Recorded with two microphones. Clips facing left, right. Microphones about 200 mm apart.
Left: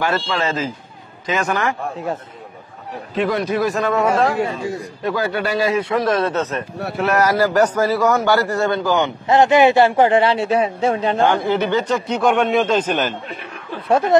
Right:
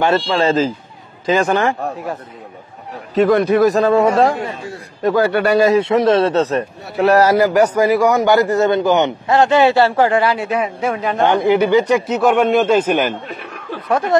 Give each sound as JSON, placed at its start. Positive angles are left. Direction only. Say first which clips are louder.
{"t": 0.0, "sound": "a man's voice", "louder": "right 5 dB", "side_deg": -30}
{"t": 3.2, "sound": "speech", "louder": "right 7 dB", "side_deg": -50}
{"t": 3.7, "sound": "a man's voice", "louder": "right 5 dB", "side_deg": -30}
{"t": 5.2, "sound": "speech", "louder": "right 7 dB", "side_deg": -60}
{"t": 5.8, "sound": "a man's voice", "louder": "right 5 dB", "side_deg": -25}
{"t": 7.3, "sound": "speech", "louder": "right 3 dB", "side_deg": -15}
{"t": 9.3, "sound": "a man's voice", "louder": "left 1 dB", "side_deg": 20}
{"t": 11.1, "sound": "speech", "louder": "right 3 dB", "side_deg": -20}
{"t": 13.8, "sound": "speech", "louder": "left 1 dB", "side_deg": 25}